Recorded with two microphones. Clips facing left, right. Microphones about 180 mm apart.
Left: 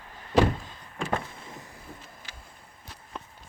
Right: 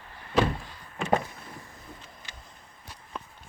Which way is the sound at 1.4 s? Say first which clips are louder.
Left 1 dB; 20° left (ahead or behind).